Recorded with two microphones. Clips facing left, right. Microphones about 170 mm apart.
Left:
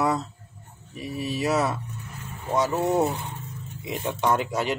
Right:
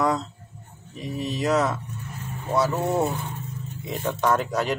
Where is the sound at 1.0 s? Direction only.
10° left (ahead or behind).